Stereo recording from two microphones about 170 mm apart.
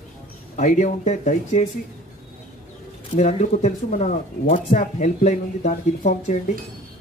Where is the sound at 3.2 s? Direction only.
40° left (ahead or behind).